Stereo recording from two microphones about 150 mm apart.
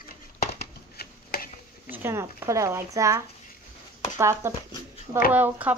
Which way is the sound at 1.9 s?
15° right (ahead or behind).